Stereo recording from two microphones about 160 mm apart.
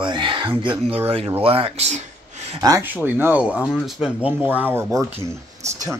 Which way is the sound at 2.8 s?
10° right (ahead or behind).